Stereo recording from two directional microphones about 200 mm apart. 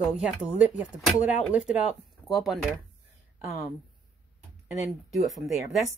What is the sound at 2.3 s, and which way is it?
Speech, centre (ahead or behind).